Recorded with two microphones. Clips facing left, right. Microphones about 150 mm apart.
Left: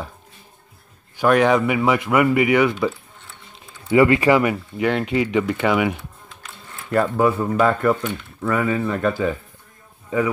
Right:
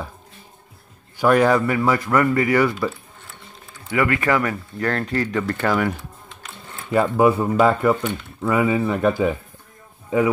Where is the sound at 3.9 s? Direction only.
20° left (ahead or behind); by 5.9 s 5° left (ahead or behind).